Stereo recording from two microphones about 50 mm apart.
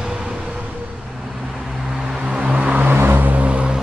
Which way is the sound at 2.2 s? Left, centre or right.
Right.